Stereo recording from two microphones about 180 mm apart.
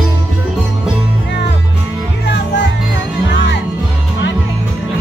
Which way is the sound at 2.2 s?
70° left (ahead or behind).